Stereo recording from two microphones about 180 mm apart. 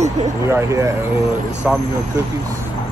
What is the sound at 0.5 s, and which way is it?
Speech, 15° right (ahead or behind).